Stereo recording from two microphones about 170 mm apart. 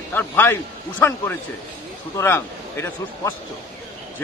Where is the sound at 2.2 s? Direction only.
15° left (ahead or behind).